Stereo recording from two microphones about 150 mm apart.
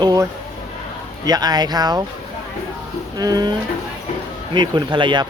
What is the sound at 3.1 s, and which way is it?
Speech, 25° right (ahead or behind).